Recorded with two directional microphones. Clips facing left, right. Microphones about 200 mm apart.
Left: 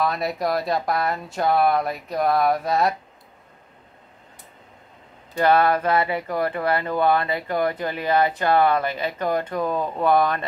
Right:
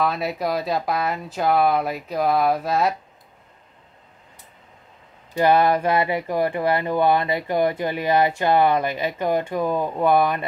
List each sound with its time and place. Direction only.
0.0 s speech: centre (ahead or behind)
5.3 s speech: 15° right (ahead or behind)